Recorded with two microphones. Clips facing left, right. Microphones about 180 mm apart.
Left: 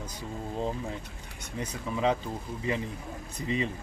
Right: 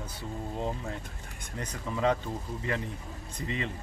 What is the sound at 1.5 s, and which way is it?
Speech, 10° left (ahead or behind).